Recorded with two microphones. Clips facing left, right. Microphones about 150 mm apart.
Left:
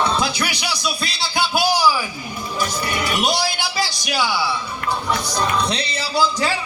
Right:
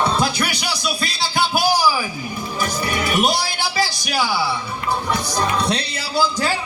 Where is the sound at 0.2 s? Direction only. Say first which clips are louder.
Right 1 dB; 50° right (ahead or behind).